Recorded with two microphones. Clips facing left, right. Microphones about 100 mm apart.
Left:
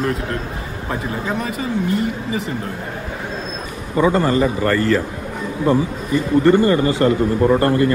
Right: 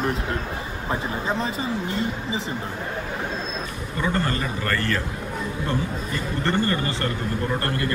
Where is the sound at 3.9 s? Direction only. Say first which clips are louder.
Left 10 dB; 15° left (ahead or behind).